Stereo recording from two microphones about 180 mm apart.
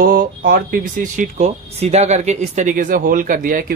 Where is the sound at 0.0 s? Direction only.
50° right (ahead or behind).